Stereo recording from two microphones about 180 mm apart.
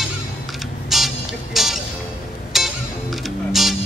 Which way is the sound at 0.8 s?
Centre (ahead or behind).